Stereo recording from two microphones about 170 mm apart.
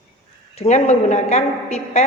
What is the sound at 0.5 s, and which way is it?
A woman's voice, 40° left (ahead or behind).